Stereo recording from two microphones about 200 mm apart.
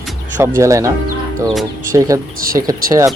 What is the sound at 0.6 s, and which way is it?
Speech, 15° right (ahead or behind).